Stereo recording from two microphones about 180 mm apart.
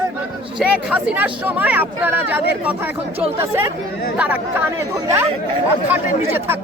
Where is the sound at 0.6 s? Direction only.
5° right (ahead or behind).